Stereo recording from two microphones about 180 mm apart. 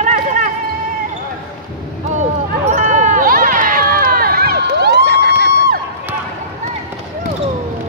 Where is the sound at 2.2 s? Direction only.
40° right (ahead or behind); by 5.5 s 65° right (ahead or behind).